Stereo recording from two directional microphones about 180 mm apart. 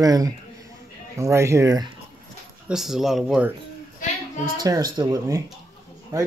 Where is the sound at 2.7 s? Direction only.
Centre (ahead or behind).